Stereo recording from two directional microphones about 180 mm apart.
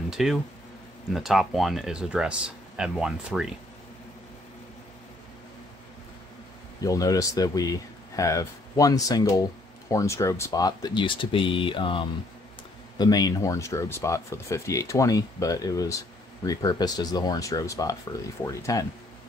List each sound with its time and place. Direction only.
0.1 s speech: centre (ahead or behind)
6.8 s speech: 20° left (ahead or behind)